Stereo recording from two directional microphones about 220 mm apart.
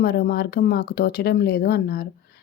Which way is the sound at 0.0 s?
45° left (ahead or behind).